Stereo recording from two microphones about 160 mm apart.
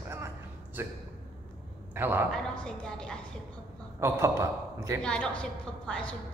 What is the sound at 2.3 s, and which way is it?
Speech, 5° left (ahead or behind).